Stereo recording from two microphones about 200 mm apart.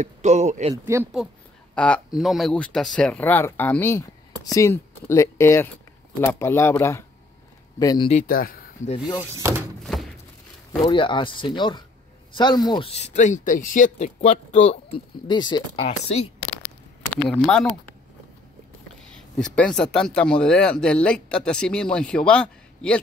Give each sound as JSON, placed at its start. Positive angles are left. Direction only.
{"t": 0.0, "sound": "speech", "side_deg": -35}
{"t": 1.8, "sound": "speech", "side_deg": 5}
{"t": 8.1, "sound": "a man's voice", "side_deg": 40}
{"t": 9.3, "sound": "speech", "side_deg": -15}
{"t": 10.8, "sound": "speech", "side_deg": 25}
{"t": 17.1, "sound": "speech", "side_deg": 5}
{"t": 19.1, "sound": "speech", "side_deg": 5}